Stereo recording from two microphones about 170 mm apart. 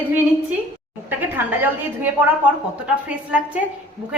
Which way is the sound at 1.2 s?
10° right (ahead or behind).